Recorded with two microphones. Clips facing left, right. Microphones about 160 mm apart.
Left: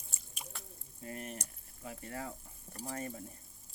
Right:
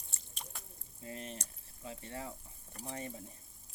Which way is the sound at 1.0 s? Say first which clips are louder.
Left 1 dB; 25° right (ahead or behind).